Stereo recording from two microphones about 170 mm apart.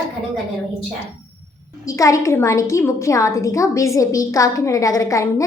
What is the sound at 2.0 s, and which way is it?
A woman's voice, 20° left (ahead or behind).